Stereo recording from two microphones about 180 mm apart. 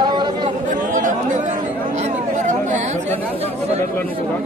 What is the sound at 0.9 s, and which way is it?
Chatter, 45° right (ahead or behind).